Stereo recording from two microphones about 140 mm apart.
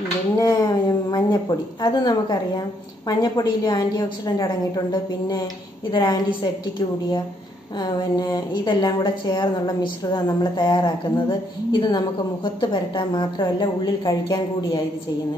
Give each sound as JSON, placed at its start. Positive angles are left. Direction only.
{"t": 0.4, "sound": "a woman's voice", "side_deg": 25}